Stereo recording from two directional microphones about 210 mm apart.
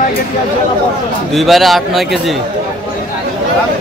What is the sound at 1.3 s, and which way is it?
Speech, centre (ahead or behind).